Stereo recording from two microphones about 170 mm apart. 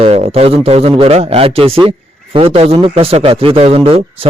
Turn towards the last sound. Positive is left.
turn(degrees=-35)  # may be behind; listen again after turning